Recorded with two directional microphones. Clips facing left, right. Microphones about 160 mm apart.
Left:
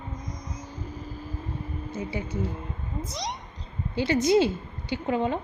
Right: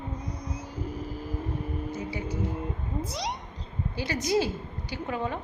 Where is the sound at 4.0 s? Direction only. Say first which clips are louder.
Left 6 dB; 25° left (ahead or behind).